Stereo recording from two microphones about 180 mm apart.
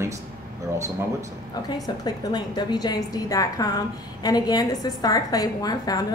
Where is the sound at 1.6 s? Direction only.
20° left (ahead or behind).